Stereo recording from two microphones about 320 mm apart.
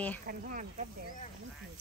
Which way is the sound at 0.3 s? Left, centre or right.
Right.